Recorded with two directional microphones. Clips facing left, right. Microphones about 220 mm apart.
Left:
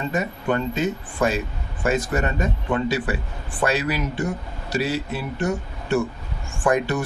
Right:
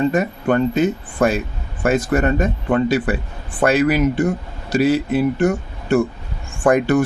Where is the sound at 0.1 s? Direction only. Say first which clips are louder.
Right 6 dB; 55° right (ahead or behind).